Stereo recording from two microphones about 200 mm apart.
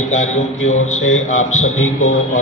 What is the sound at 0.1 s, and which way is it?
Speech, 35° left (ahead or behind).